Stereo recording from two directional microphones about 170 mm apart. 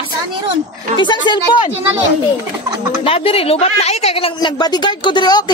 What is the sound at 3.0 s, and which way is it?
Speech, 35° left (ahead or behind).